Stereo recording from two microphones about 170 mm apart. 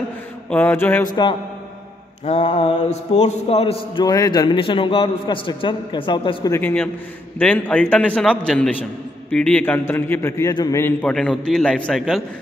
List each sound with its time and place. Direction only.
0.5 s a man's voice: 10° left (ahead or behind)
2.2 s mantra: 40° left (ahead or behind)
4.0 s a man's voice: 25° left (ahead or behind)
6.5 s a man's voice: 10° left (ahead or behind)